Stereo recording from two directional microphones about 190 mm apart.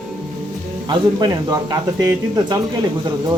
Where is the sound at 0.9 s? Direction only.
20° right (ahead or behind).